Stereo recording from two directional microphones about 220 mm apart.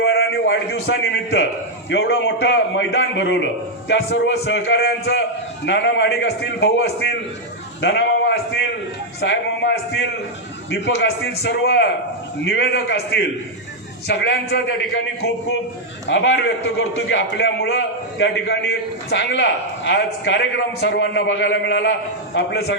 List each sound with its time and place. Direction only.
0.0 s a man's voice: 50° left (ahead or behind)
16.0 s a man's voice: 55° left (ahead or behind)